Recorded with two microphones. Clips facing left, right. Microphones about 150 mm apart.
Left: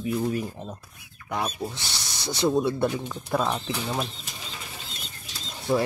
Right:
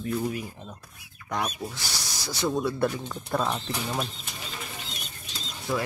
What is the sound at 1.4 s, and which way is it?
Speech, 25° left (ahead or behind).